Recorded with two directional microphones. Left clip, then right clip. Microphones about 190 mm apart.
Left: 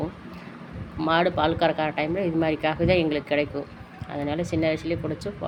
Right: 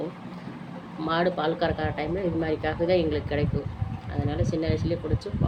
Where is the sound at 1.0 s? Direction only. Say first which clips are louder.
Left 3 dB; 40° left (ahead or behind).